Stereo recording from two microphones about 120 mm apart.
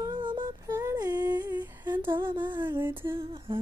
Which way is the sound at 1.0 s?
35° right (ahead or behind).